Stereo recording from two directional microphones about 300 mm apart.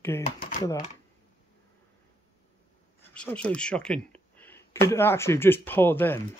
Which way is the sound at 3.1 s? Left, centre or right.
Centre.